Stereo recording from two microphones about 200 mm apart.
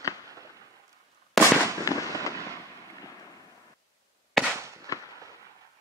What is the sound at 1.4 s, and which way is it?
Fireworks, centre (ahead or behind).